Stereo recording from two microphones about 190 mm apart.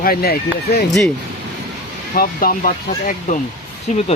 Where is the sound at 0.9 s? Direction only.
Centre (ahead or behind).